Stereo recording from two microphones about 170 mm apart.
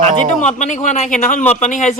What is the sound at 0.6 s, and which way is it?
Speech, 45° left (ahead or behind).